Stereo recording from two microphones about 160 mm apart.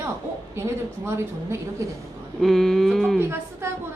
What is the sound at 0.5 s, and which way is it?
A woman's voice, 15° right (ahead or behind).